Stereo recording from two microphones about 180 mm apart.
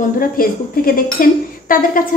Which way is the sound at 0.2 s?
55° left (ahead or behind).